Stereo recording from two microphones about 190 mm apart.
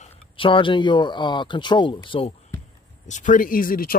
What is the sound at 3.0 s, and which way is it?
Speech, 40° left (ahead or behind).